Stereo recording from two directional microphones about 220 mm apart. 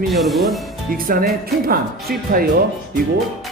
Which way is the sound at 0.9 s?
40° right (ahead or behind).